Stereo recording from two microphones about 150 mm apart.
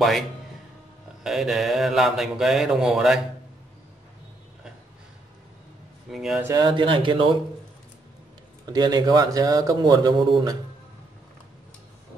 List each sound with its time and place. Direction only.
1.2 s speech: centre (ahead or behind)
6.0 s speech: centre (ahead or behind)
6.4 s speech: 30° right (ahead or behind)
8.6 s speech: 25° right (ahead or behind)